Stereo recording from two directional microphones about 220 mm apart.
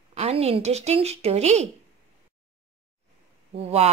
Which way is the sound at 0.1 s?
30° right (ahead or behind).